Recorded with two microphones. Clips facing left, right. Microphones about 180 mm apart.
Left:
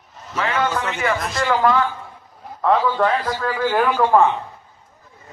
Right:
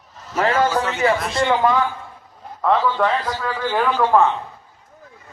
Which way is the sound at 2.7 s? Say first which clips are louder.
Left 1 dB; 5° left (ahead or behind).